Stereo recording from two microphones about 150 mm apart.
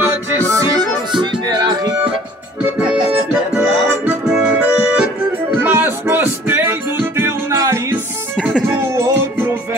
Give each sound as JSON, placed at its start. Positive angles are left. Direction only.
{"t": 0.0, "sound": "music", "side_deg": -15}
{"t": 1.2, "sound": "music", "side_deg": -30}
{"t": 2.6, "sound": "music", "side_deg": -5}
{"t": 3.1, "sound": "accordion", "side_deg": -10}
{"t": 8.4, "sound": "music", "side_deg": -5}